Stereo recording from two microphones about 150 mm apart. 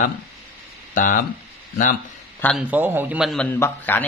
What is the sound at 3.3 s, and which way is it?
Speech, 5° left (ahead or behind).